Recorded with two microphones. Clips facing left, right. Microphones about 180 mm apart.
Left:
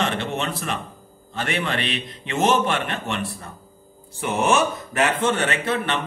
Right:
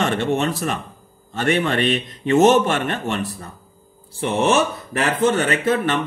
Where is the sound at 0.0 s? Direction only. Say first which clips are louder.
Right 5 dB; 45° right (ahead or behind).